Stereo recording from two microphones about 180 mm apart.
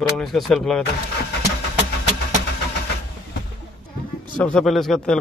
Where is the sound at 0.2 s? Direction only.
Centre (ahead or behind).